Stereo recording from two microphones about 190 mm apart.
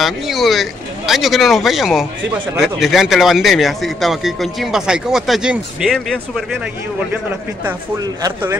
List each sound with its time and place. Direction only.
0.0 s speech: centre (ahead or behind)
8.0 s speech: 15° right (ahead or behind)